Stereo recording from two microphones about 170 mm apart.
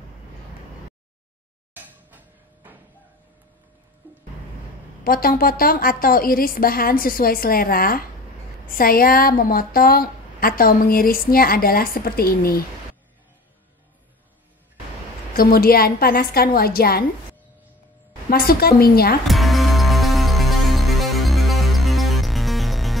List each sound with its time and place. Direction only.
1.7 s a sound: 10° right (ahead or behind)
5.0 s a woman's voice: 60° left (ahead or behind)
15.3 s a woman's voice: 60° left (ahead or behind)
18.3 s a woman's voice: 65° left (ahead or behind)
19.2 s music: centre (ahead or behind)